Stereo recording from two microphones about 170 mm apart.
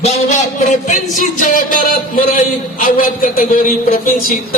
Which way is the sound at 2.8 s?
55° left (ahead or behind).